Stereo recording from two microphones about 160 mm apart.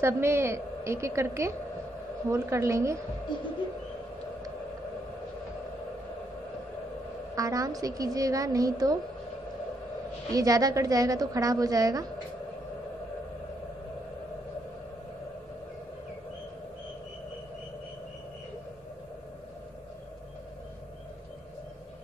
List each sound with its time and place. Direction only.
0.0 s a woman's voice: 15° right (ahead or behind)
7.3 s a woman's voice: 20° right (ahead or behind)
10.3 s a woman's voice: 20° right (ahead or behind)